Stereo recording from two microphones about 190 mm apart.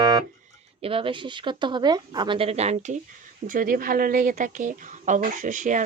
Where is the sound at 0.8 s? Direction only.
30° right (ahead or behind).